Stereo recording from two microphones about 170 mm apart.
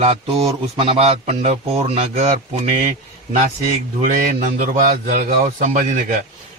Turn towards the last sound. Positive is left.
turn(degrees=-50)  # may be behind; listen again after turning